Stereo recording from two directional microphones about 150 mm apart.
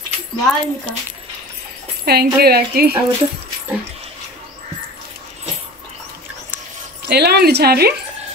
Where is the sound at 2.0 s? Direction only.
90° right.